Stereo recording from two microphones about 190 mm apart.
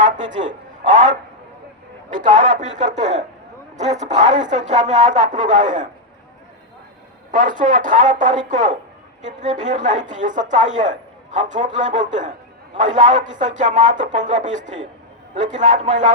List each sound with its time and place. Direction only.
0.0 s speech: 40° right (ahead or behind)
7.3 s speech: 45° right (ahead or behind)